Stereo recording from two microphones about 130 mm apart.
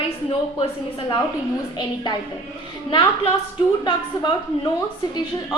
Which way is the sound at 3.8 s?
35° left (ahead or behind).